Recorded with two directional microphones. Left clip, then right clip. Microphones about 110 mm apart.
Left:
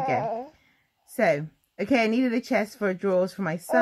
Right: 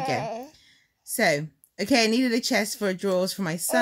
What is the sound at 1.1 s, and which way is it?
A woman's voice, 5° right (ahead or behind).